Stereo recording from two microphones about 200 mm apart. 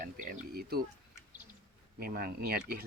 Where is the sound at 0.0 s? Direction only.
45° right (ahead or behind).